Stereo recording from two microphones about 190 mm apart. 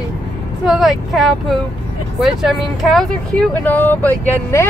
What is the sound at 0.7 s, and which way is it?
Speech, centre (ahead or behind).